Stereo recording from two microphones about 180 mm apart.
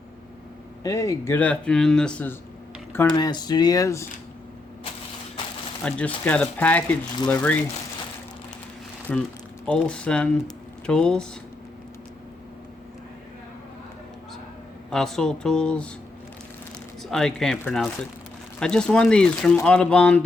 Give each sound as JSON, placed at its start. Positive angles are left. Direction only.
{"t": 0.9, "sound": "speech", "side_deg": 15}
{"t": 3.1, "sound": "speech", "side_deg": 25}
{"t": 5.8, "sound": "speech", "side_deg": 5}
{"t": 9.1, "sound": "speech", "side_deg": 5}
{"t": 14.8, "sound": "speech", "side_deg": 0}
{"t": 17.0, "sound": "speech", "side_deg": 0}